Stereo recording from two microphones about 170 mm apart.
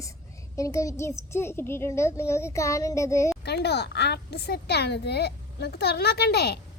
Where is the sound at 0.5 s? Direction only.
20° left (ahead or behind).